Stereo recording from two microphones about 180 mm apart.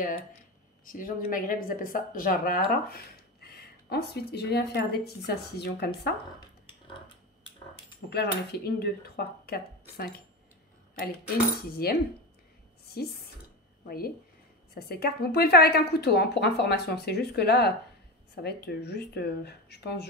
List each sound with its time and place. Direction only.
0.8 s speech: 50° left (ahead or behind); by 6.1 s 65° left (ahead or behind)
8.1 s speech: 65° left (ahead or behind)
11.7 s speech: 60° left (ahead or behind)